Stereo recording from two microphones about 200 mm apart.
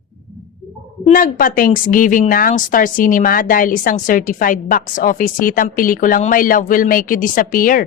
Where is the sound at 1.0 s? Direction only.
45° left (ahead or behind).